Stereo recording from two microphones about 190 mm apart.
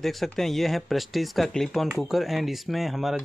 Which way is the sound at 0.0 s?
Centre (ahead or behind).